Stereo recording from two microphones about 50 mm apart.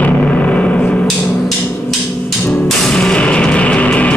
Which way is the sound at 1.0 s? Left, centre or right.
Centre.